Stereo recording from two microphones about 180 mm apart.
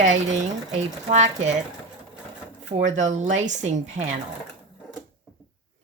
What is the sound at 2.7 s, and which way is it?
Speech, 40° right (ahead or behind).